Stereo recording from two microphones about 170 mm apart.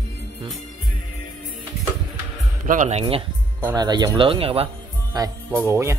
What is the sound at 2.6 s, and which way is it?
Speech, 50° right (ahead or behind).